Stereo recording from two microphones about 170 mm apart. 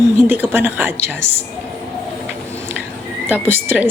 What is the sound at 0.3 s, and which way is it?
Speech, 10° right (ahead or behind).